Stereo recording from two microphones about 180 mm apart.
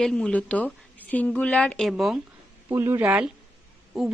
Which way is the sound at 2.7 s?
15° right (ahead or behind).